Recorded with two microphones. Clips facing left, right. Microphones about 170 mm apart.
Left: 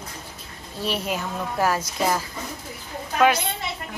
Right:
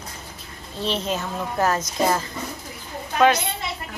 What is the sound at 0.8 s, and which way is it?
A woman's voice, 10° left (ahead or behind).